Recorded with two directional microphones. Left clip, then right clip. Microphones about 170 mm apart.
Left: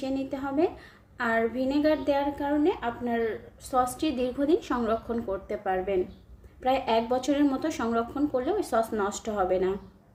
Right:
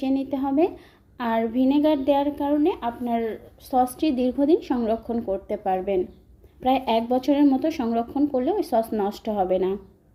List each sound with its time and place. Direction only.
0.0 s speech: 25° right (ahead or behind)
3.7 s a woman's voice: 20° right (ahead or behind)